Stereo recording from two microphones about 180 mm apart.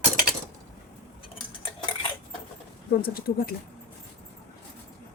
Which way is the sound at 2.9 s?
55° left (ahead or behind).